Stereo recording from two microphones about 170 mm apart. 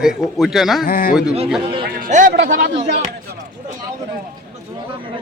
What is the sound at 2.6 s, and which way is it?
Speech, 80° right.